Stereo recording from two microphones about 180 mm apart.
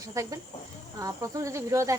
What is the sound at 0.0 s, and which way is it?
Speech, 20° right (ahead or behind).